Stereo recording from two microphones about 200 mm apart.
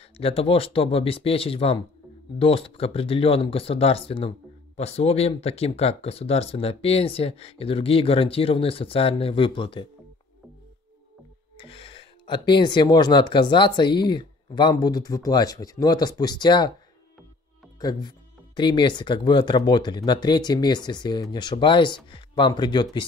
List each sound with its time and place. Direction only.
0.2 s speech: 30° left (ahead or behind)
11.5 s speech: 25° left (ahead or behind)
17.7 s speech: 20° left (ahead or behind)